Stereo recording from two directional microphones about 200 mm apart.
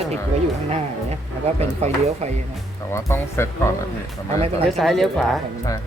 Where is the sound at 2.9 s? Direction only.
15° left (ahead or behind).